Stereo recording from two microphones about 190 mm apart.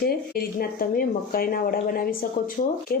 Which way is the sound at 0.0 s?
55° left (ahead or behind).